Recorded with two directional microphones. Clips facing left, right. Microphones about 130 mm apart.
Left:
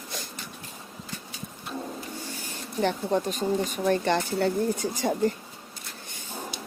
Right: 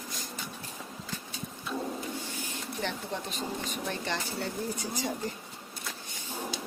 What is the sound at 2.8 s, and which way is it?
Speech, 45° left (ahead or behind).